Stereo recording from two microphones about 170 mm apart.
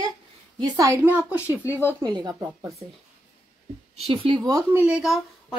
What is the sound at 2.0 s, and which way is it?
Speech, 25° right (ahead or behind).